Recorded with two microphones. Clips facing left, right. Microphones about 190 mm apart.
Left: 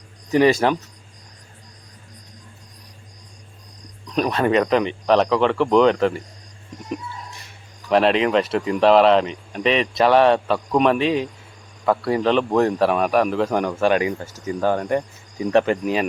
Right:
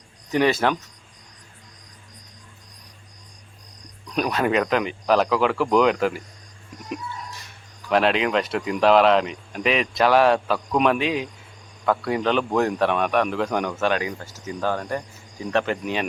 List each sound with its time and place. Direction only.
0.3 s speech: 5° left (ahead or behind)
4.1 s speech: 5° right (ahead or behind)
7.9 s speech: centre (ahead or behind)
14.6 s cricket: 15° left (ahead or behind)